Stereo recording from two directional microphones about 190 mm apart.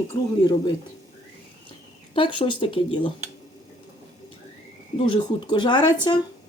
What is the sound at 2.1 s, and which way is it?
Speech, 25° left (ahead or behind).